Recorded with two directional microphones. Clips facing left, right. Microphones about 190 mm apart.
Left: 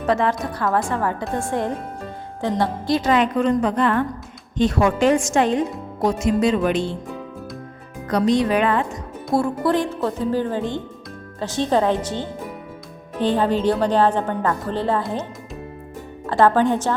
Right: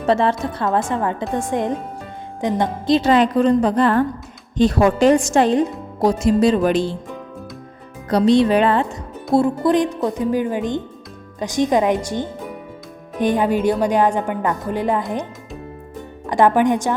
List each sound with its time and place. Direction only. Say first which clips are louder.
0.0 s a woman's voice: right 3 dB; 30° right (ahead or behind)
8.1 s a woman's voice: right 4 dB; 30° right (ahead or behind); by 16.9 s 15° right (ahead or behind)